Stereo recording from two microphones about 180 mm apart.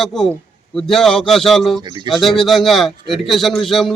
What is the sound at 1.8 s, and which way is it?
Speech, 25° right (ahead or behind).